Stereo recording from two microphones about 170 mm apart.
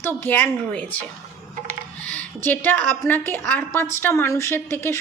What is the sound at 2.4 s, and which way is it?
A woman's voice, 10° left (ahead or behind).